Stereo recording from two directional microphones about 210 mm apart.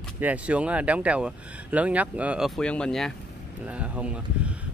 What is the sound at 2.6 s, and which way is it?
Speech, 5° left (ahead or behind).